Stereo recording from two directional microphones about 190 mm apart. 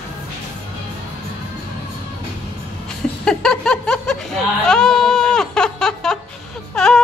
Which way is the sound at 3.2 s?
5° left (ahead or behind).